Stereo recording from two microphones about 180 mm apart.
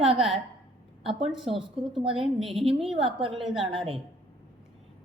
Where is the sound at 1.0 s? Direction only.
30° right (ahead or behind).